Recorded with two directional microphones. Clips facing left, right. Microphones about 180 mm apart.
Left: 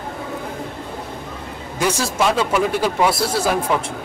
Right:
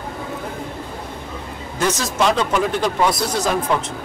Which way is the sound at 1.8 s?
10° left (ahead or behind).